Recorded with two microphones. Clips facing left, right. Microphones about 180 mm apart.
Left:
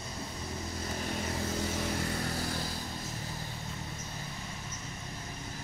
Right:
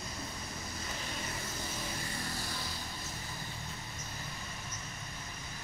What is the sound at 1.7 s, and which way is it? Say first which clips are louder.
Music: left 7 dB; 65° left (ahead or behind).